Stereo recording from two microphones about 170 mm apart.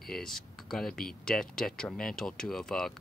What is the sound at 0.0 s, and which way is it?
Speech, centre (ahead or behind).